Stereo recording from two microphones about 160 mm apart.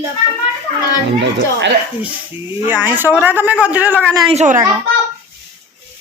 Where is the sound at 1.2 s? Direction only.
90° right.